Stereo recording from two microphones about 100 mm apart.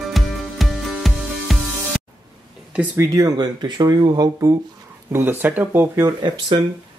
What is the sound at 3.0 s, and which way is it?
Speech, 35° right (ahead or behind).